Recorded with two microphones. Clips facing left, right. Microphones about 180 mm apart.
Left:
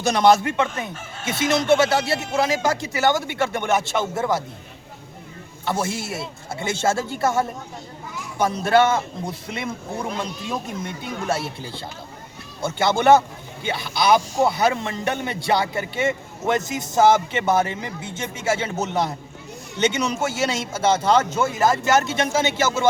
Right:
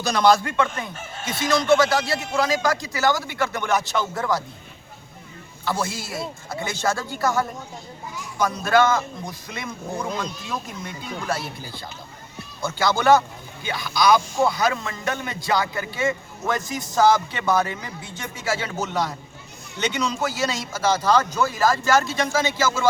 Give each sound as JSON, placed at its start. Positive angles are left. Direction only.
{"t": 0.0, "sound": "a man's voice", "side_deg": 25}
{"t": 5.6, "sound": "a man's voice", "side_deg": 25}